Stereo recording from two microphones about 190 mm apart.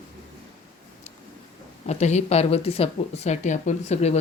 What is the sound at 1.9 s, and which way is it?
Speech, 35° left (ahead or behind).